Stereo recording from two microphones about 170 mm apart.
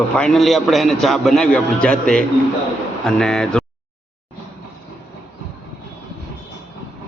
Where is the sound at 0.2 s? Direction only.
Centre (ahead or behind).